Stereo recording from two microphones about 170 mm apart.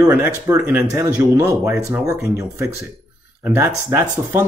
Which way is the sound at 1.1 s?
15° right (ahead or behind).